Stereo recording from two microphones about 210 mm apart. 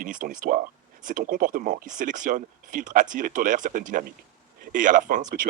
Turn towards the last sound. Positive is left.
turn(degrees=-40)  # may be behind; listen again after turning